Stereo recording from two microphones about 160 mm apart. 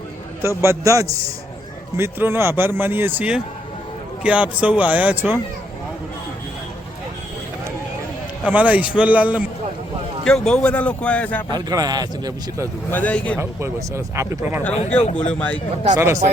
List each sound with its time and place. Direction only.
0.4 s a man's voice: 15° right (ahead or behind)
8.4 s a man's voice: 10° right (ahead or behind)
10.2 s speech: 5° left (ahead or behind)
11.5 s a man's voice: 25° right (ahead or behind)
12.9 s speech: 10° left (ahead or behind)
13.4 s a man's voice: 15° right (ahead or behind)
14.8 s speech: 40° left (ahead or behind)
15.1 s speech: 10° left (ahead or behind)
16.0 s a man's voice: 15° right (ahead or behind)